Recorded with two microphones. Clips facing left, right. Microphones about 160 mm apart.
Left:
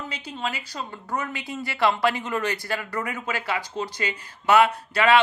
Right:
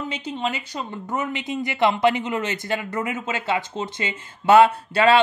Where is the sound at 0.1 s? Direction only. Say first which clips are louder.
Right 5 dB; 25° right (ahead or behind).